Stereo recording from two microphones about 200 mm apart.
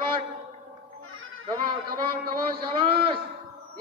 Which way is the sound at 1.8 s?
50° right (ahead or behind).